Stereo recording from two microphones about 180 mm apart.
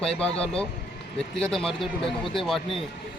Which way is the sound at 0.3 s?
35° left (ahead or behind).